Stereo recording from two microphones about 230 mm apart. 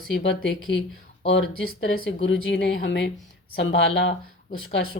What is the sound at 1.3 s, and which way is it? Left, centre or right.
Speech, left.